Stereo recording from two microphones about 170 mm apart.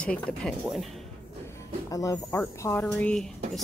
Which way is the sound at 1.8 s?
20° left (ahead or behind).